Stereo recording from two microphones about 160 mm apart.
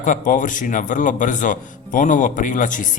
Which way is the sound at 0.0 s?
55° left (ahead or behind).